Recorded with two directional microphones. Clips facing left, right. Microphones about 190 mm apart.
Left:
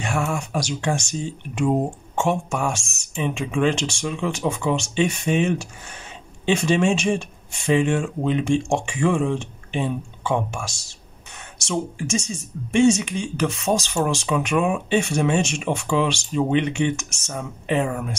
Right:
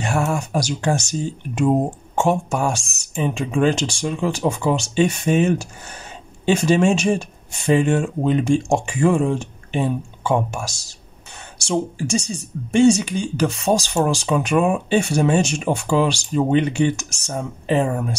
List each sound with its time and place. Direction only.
0.0 s speech: 40° right (ahead or behind)